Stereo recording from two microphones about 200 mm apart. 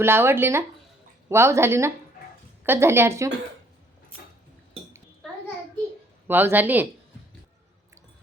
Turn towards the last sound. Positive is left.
turn(degrees=-10)  # may be behind; listen again after turning